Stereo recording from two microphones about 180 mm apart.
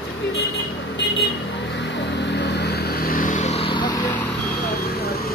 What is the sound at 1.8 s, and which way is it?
Vehicle, 80° left.